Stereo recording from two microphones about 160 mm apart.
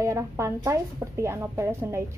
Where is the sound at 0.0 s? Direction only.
20° right (ahead or behind).